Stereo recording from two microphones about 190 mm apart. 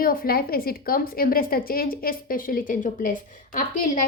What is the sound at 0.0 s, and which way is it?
A woman's voice, 50° left (ahead or behind).